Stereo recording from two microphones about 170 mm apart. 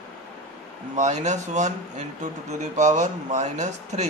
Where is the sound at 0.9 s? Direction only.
45° right (ahead or behind).